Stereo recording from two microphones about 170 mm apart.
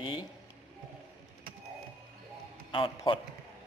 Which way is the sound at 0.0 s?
30° left (ahead or behind).